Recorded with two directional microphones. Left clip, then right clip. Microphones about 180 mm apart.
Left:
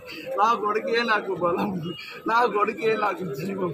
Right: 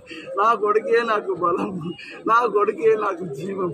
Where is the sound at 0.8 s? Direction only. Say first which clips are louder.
Right 3 dB; 10° right (ahead or behind).